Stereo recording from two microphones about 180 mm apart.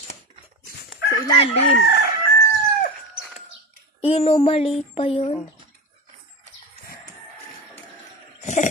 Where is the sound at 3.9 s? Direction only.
35° left (ahead or behind).